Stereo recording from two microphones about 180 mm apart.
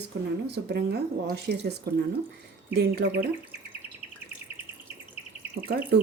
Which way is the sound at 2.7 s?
70° right (ahead or behind).